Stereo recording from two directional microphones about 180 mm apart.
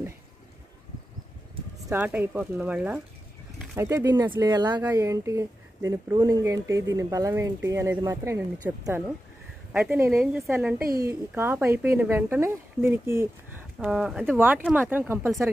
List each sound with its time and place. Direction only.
1.9 s speech: 10° right (ahead or behind)
10.8 s speech: 55° right (ahead or behind)
11.1 s speech: 15° right (ahead or behind)